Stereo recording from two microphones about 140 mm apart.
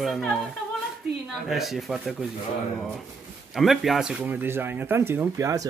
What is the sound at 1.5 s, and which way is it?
Speech, centre (ahead or behind).